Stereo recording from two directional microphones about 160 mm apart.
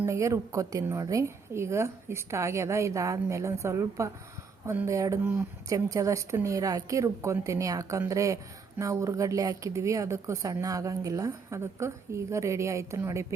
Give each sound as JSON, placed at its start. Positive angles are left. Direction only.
{"t": 0.0, "sound": "a woman's voice", "side_deg": -20}